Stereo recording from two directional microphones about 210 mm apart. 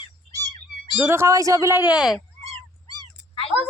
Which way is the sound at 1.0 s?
10° right (ahead or behind).